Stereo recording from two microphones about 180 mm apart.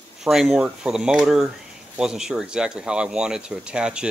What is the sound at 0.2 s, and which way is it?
Speech, centre (ahead or behind).